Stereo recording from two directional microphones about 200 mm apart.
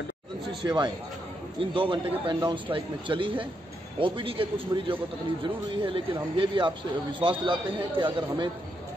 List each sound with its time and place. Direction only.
0.7 s speech: 25° right (ahead or behind)